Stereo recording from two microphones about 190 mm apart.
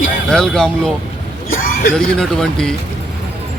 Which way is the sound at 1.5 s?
45° left (ahead or behind).